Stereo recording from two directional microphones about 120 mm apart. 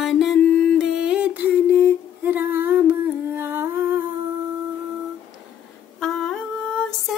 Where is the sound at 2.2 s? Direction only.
15° right (ahead or behind).